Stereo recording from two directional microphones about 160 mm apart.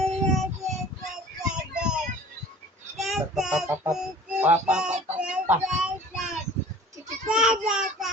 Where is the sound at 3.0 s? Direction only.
Centre (ahead or behind).